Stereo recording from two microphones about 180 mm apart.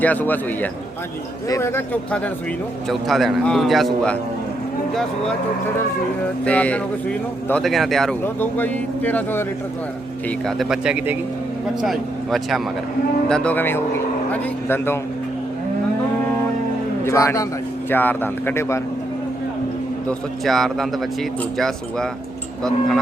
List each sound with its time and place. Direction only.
0.0 s a man's voice: 10° left (ahead or behind)
6.4 s a man's voice: 5° left (ahead or behind)
17.0 s speech: 15° left (ahead or behind)
20.1 s a man's voice: centre (ahead or behind)